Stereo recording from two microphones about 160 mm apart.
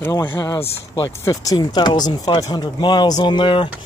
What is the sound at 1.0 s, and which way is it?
Speech, 25° left (ahead or behind).